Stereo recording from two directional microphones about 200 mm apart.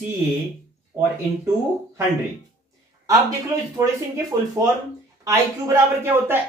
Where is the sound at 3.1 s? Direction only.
15° right (ahead or behind).